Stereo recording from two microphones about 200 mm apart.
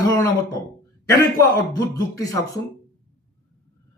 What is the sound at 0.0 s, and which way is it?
Speech, 20° left (ahead or behind).